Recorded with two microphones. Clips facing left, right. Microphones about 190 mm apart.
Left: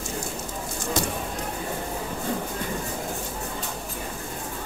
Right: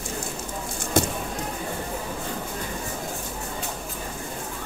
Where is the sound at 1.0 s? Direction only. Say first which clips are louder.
Right 6 dB; 55° right (ahead or behind).